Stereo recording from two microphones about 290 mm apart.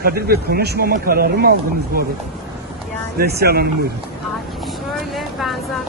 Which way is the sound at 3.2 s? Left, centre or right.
Right.